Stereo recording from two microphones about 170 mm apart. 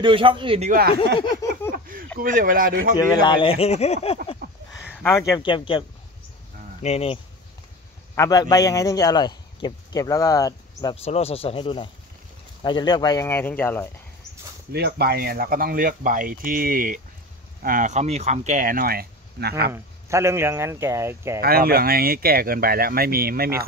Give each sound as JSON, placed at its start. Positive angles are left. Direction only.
{"t": 0.0, "sound": "speech", "side_deg": -30}
{"t": 0.7, "sound": "speech", "side_deg": -60}
{"t": 1.1, "sound": "a man's voice", "side_deg": 25}
{"t": 2.1, "sound": "speech", "side_deg": -55}
{"t": 3.0, "sound": "speech", "side_deg": 25}
{"t": 4.4, "sound": "a sound", "side_deg": -65}
{"t": 5.0, "sound": "a man's voice", "side_deg": 15}
{"t": 8.2, "sound": "a man's voice", "side_deg": 20}
{"t": 11.0, "sound": "speech", "side_deg": 35}
{"t": 14.7, "sound": "speech", "side_deg": -80}
{"t": 19.7, "sound": "speech", "side_deg": -15}
{"t": 21.4, "sound": "speech", "side_deg": -60}